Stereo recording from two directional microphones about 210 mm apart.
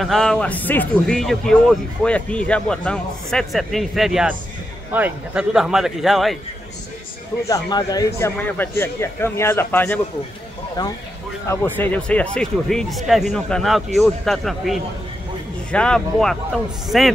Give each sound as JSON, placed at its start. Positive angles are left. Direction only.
{"t": 0.0, "sound": "speech", "side_deg": 0}
{"t": 7.4, "sound": "a man's voice", "side_deg": 15}
{"t": 10.8, "sound": "a man's voice", "side_deg": 20}